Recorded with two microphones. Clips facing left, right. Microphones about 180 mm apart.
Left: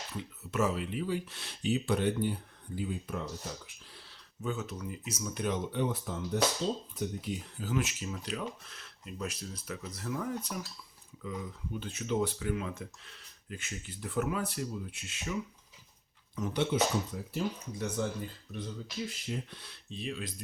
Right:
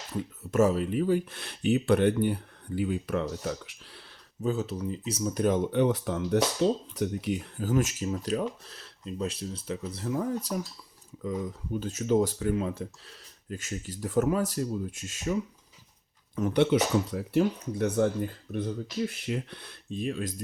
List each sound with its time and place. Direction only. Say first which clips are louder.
0.1 s speech: right 9 dB; 45° right (ahead or behind); by 4.0 s 80° right
4.4 s speech: right 7 dB; 35° right (ahead or behind); by 7.4 s 70° right (ahead or behind)
7.6 s speech: right 6 dB; 45° right (ahead or behind)
16.3 s speech: right 8 dB; 60° right (ahead or behind)